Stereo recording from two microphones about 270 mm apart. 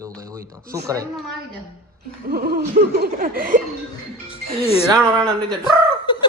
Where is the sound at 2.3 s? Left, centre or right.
Right.